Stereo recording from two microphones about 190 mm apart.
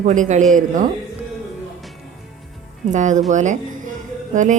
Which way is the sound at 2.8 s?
40° right (ahead or behind).